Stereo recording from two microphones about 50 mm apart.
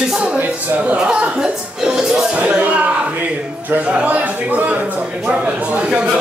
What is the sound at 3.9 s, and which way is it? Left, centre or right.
Speech, right.